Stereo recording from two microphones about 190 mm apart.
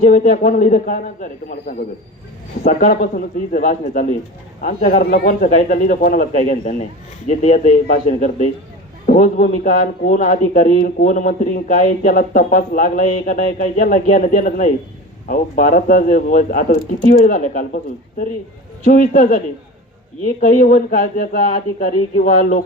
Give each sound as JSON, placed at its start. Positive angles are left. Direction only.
{"t": 0.0, "sound": "a man's voice", "side_deg": 45}
{"t": 18.9, "sound": "a man's voice", "side_deg": 45}
{"t": 20.4, "sound": "a man's voice", "side_deg": 45}